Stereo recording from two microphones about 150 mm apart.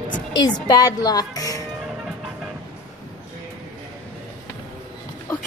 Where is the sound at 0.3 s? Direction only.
30° left (ahead or behind).